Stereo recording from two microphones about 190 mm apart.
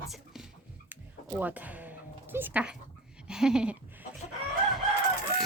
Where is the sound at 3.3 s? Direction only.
5° right (ahead or behind).